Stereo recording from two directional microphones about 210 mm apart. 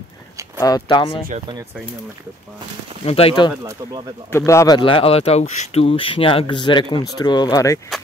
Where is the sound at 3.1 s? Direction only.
25° left (ahead or behind).